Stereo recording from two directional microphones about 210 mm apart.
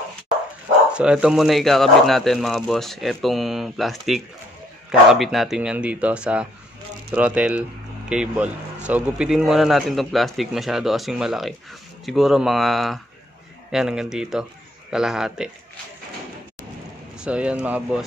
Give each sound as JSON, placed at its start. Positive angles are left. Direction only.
{"t": 0.9, "sound": "speech", "side_deg": -5}
{"t": 17.2, "sound": "speech", "side_deg": -5}